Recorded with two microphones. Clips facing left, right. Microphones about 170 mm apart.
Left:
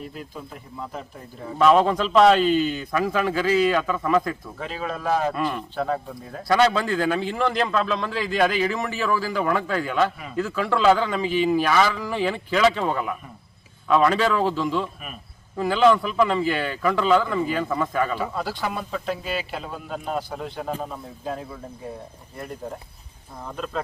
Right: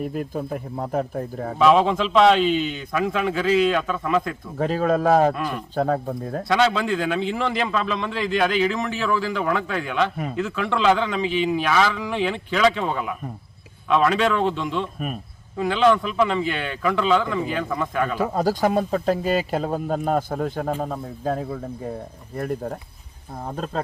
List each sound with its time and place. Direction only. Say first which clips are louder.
0.0 s speech: right 9 dB; 50° right (ahead or behind)
1.5 s a man's voice: even; centre (ahead or behind)
4.5 s speech: right 10 dB; 45° right (ahead or behind)
5.3 s a man's voice: left 1 dB; centre (ahead or behind)
5.7 s speech: right 4 dB; 45° right (ahead or behind)
6.5 s a man's voice: left 1 dB; centre (ahead or behind)
18.2 s speech: right 7 dB; 40° right (ahead or behind)